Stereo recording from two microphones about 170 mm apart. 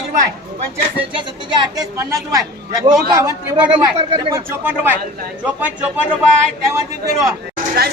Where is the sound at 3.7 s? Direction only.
25° right (ahead or behind).